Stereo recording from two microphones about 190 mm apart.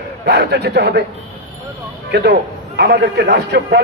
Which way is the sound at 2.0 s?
60° right (ahead or behind).